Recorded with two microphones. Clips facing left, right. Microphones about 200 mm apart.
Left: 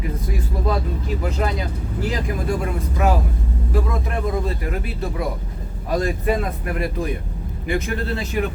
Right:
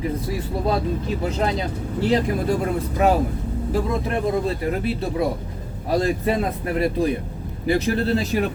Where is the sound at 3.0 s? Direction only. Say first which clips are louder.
Right 2 dB; 30° right (ahead or behind).